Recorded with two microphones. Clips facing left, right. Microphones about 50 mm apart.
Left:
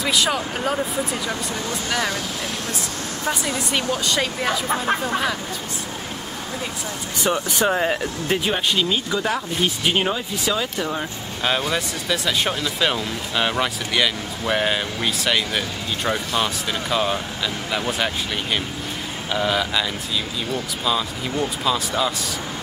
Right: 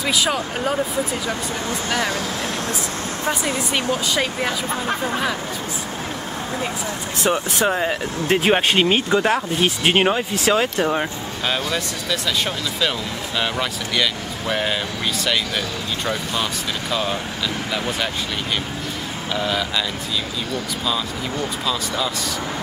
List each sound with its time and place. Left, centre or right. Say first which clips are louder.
0.0 s speech: even; centre
4.0 s speech: right 1 dB; centre
7.5 s speech: even; centre
8.4 s speech: right 6 dB; right
11.7 s speech: even; centre
16.9 s speech: left 2 dB; centre
19.3 s speech: left 2 dB; centre
20.8 s speech: left 2 dB; centre